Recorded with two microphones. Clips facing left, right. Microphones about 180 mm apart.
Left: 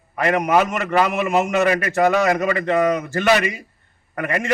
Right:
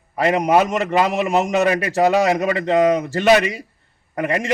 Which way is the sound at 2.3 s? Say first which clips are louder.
Right 1 dB; 15° right (ahead or behind).